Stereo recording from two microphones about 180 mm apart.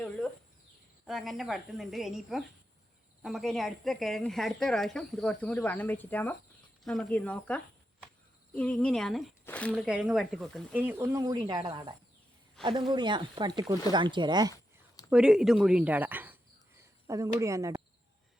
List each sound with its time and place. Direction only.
1.0 s a woman's voice: centre (ahead or behind)
10.8 s speech: 10° right (ahead or behind)
12.6 s speech: 5° left (ahead or behind)
12.9 s speech: 25° right (ahead or behind)
14.5 s a sound: 20° left (ahead or behind)
15.1 s speech: 5° right (ahead or behind)